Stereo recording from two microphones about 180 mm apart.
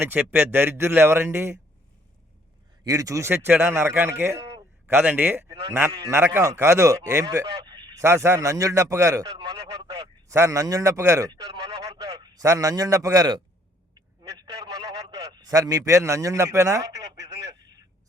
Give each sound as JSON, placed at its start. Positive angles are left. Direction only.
{"t": 0.0, "sound": "a man's voice", "side_deg": -10}
{"t": 2.8, "sound": "a man's voice", "side_deg": -20}
{"t": 9.4, "sound": "speech", "side_deg": -30}
{"t": 10.2, "sound": "a man's voice", "side_deg": -15}